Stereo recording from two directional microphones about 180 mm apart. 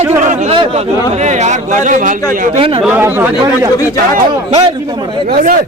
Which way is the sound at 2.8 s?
10° right (ahead or behind).